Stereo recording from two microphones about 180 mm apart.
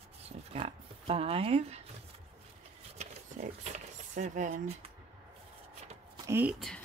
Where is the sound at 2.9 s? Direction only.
40° right (ahead or behind).